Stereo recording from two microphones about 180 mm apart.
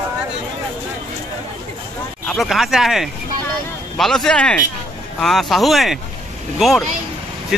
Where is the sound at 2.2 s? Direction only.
Centre (ahead or behind).